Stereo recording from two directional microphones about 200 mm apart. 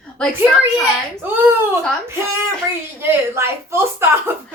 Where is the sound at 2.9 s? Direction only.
10° right (ahead or behind).